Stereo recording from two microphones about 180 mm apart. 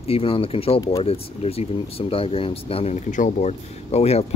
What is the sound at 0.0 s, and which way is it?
Speech, 30° left (ahead or behind).